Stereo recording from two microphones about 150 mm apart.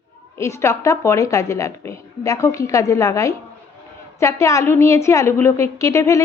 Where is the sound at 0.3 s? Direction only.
20° left (ahead or behind).